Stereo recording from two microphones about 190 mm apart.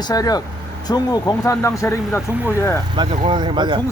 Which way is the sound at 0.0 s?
20° left (ahead or behind).